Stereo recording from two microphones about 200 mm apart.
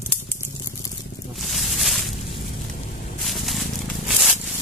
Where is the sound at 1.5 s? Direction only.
Centre (ahead or behind).